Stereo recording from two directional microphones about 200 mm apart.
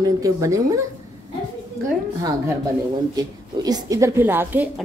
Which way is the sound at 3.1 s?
20° right (ahead or behind).